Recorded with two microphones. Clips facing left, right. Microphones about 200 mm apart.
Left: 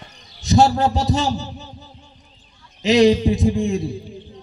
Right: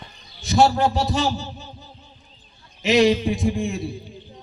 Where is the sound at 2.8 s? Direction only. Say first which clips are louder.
Left 3 dB; 35° left (ahead or behind).